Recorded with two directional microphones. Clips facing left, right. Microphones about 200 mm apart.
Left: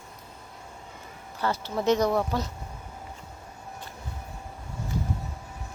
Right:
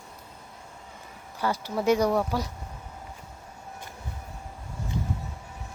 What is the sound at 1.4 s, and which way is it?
A woman's voice, 10° right (ahead or behind).